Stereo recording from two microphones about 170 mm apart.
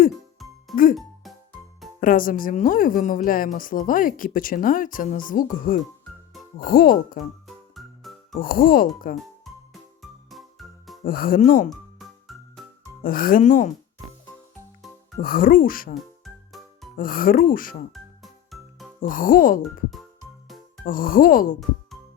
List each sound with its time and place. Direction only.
0.3 s music: centre (ahead or behind)
2.0 s a woman's voice: 55° left (ahead or behind)
7.4 s music: centre (ahead or behind)
8.3 s speech: 55° left (ahead or behind)
10.0 s music: centre (ahead or behind)
11.0 s a woman's voice: 55° left (ahead or behind)
11.7 s music: centre (ahead or behind)
13.0 s speech: 55° left (ahead or behind)
15.2 s speech: 55° left (ahead or behind)
16.0 s music: centre (ahead or behind)
17.0 s speech: 55° left (ahead or behind)
17.9 s music: centre (ahead or behind)
19.0 s a woman's voice: 55° left (ahead or behind)
20.8 s speech: 55° left (ahead or behind)